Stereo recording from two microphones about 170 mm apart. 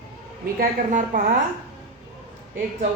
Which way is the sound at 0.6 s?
55° right (ahead or behind).